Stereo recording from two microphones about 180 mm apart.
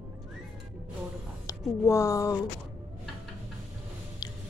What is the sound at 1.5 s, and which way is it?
Speech, 15° left (ahead or behind).